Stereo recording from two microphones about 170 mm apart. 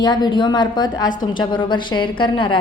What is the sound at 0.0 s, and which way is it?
A woman's voice, 25° left (ahead or behind).